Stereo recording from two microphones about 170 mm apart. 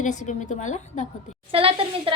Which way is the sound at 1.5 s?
30° right (ahead or behind).